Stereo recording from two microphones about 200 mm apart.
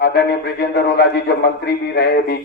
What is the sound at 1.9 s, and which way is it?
Speech, 50° left (ahead or behind).